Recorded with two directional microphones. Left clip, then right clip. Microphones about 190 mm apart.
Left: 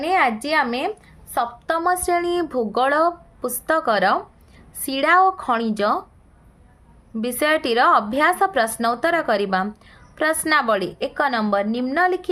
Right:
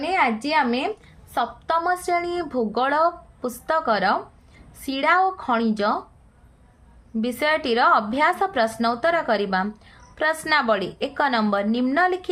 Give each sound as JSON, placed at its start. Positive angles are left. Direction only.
{"t": 0.0, "sound": "a woman's voice", "side_deg": 35}
{"t": 7.2, "sound": "a woman's voice", "side_deg": 30}